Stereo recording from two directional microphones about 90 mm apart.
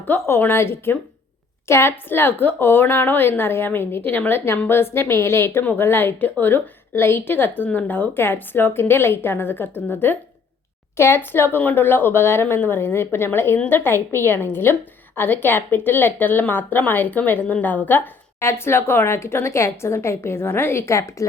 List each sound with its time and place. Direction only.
0.1 s a woman's voice: 25° left (ahead or behind)